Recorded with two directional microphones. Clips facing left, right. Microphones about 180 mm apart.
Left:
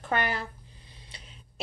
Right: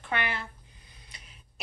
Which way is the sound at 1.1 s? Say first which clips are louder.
Left 4 dB; 30° left (ahead or behind).